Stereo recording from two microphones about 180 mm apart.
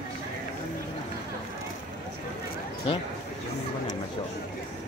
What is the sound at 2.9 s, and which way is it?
Speech, 30° left (ahead or behind).